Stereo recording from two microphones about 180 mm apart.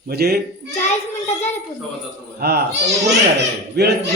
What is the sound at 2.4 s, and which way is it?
Speech, 60° right (ahead or behind).